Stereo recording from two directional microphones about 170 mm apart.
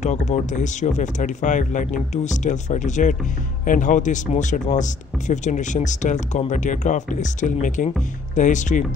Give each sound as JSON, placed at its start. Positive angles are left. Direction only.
{"t": 0.0, "sound": "speech", "side_deg": 45}